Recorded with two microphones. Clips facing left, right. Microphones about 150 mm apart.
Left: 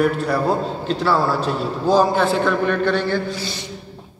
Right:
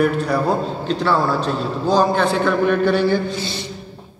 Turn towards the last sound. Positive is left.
turn(degrees=-10)  # may be behind; listen again after turning